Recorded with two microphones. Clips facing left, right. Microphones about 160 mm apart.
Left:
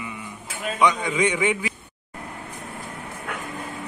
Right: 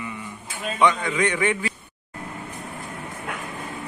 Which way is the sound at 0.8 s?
15° left (ahead or behind).